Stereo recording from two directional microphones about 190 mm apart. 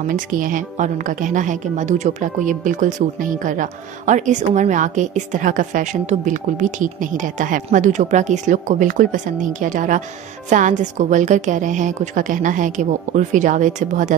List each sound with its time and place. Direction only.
0.1 s a woman's voice: 45° right (ahead or behind)